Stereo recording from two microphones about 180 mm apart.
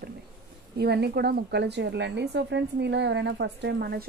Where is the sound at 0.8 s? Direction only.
65° right (ahead or behind).